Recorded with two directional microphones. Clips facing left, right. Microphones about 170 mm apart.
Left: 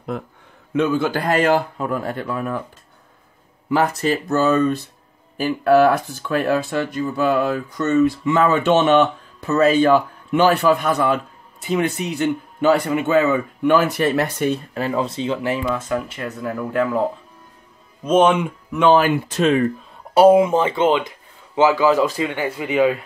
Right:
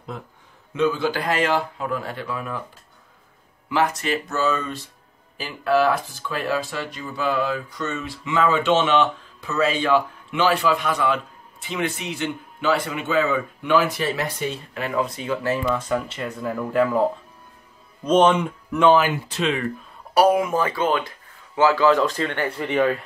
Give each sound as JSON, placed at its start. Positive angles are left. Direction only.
{"t": 0.1, "sound": "speech", "side_deg": 60}
{"t": 3.7, "sound": "speech", "side_deg": 40}
{"t": 14.7, "sound": "speech", "side_deg": 30}
{"t": 16.3, "sound": "speech", "side_deg": 0}
{"t": 18.9, "sound": "speech", "side_deg": 45}
{"t": 20.2, "sound": "speech", "side_deg": 25}